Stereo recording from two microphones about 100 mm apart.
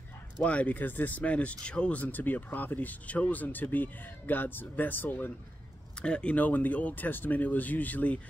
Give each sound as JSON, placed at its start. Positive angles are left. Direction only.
{"t": 0.4, "sound": "speech", "side_deg": 15}